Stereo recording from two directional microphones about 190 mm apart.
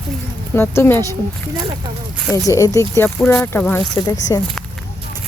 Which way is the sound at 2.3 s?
15° left (ahead or behind).